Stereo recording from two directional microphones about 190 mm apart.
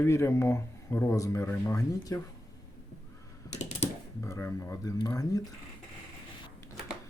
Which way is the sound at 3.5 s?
35° left (ahead or behind).